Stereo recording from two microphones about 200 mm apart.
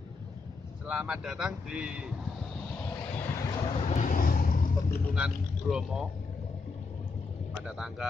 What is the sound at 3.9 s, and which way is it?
Vehicle, 40° left (ahead or behind).